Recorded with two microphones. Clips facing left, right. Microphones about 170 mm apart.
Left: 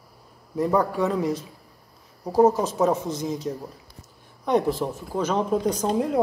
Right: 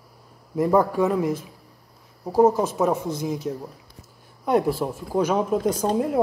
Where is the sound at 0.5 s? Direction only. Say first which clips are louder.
Right 3 dB; 10° right (ahead or behind).